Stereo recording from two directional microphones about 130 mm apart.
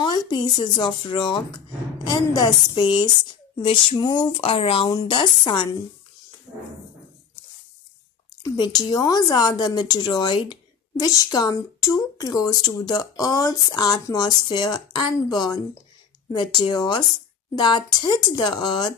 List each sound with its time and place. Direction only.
0.0 s speech: 35° left (ahead or behind)
8.5 s speech: 30° left (ahead or behind)